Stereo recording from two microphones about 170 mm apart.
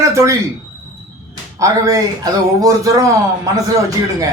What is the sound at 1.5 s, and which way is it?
A man's voice, 20° right (ahead or behind).